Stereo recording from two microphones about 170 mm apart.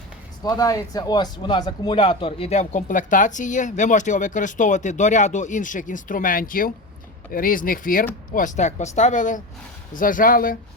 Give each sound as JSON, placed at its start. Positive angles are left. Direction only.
{"t": 0.4, "sound": "speech", "side_deg": 20}